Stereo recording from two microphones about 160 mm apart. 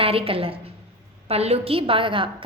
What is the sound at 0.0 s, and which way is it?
A woman's voice, 35° right (ahead or behind).